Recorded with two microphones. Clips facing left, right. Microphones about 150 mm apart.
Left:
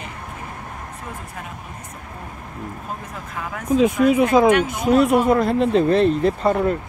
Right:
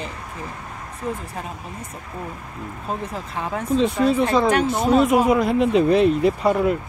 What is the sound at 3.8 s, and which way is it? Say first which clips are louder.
Speech: left 3 dB; 10° left (ahead or behind).